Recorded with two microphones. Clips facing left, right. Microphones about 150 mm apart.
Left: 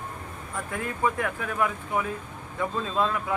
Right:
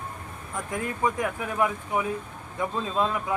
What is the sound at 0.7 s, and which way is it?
Speech, 15° right (ahead or behind).